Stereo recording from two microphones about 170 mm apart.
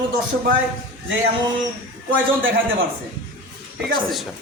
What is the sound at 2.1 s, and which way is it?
Speech, 90° right.